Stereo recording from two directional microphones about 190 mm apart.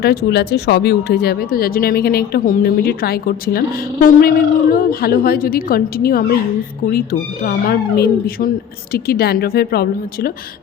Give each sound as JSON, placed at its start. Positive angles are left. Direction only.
{"t": 0.0, "sound": "speech", "side_deg": 55}